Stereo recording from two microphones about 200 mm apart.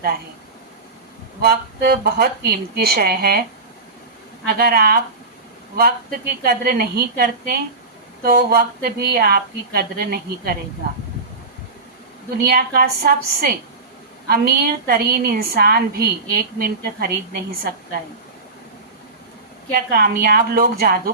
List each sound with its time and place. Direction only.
1.4 s a woman's voice: 50° right (ahead or behind)
4.4 s a woman's voice: 50° right (ahead or behind)
12.4 s a woman's voice: 50° right (ahead or behind)
19.7 s a woman's voice: 50° right (ahead or behind)